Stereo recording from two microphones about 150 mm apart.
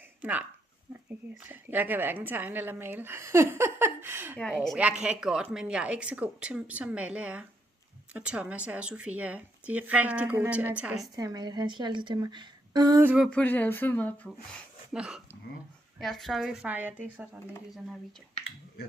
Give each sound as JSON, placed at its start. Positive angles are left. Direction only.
{"t": 0.2, "sound": "speech", "side_deg": -10}
{"t": 4.5, "sound": "speech", "side_deg": 0}
{"t": 11.1, "sound": "a woman's voice", "side_deg": -25}
{"t": 13.1, "sound": "speech", "side_deg": -5}
{"t": 13.3, "sound": "speech", "side_deg": 10}
{"t": 14.9, "sound": "speech", "side_deg": -5}